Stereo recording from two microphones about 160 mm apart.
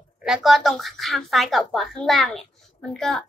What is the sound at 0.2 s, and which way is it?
Speech, centre (ahead or behind).